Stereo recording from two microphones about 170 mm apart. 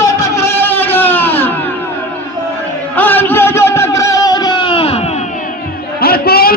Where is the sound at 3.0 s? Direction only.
10° left (ahead or behind); by 5.0 s 35° left (ahead or behind).